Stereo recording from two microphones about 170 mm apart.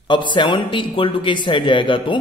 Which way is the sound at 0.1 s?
25° left (ahead or behind).